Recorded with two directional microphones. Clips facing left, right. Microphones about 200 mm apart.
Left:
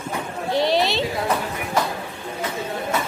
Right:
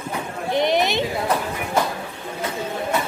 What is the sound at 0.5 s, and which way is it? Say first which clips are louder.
Chatter: even; 20° right (ahead or behind).